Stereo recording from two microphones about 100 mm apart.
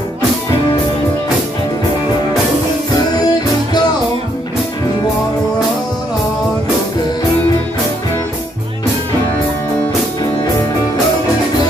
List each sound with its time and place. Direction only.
3.2 s music: 40° left (ahead or behind)